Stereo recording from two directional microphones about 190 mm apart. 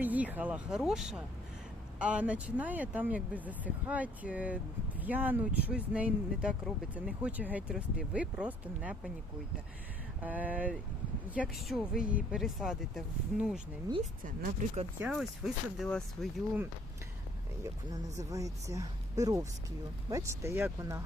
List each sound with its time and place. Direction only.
0.0 s speech: 10° right (ahead or behind)
10.2 s speech: 10° right (ahead or behind)
14.0 s speech: 45° right (ahead or behind)
15.1 s speech: centre (ahead or behind)
17.6 s speech: 20° right (ahead or behind)